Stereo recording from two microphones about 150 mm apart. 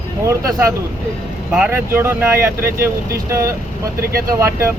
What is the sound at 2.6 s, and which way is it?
Speech, 80° right.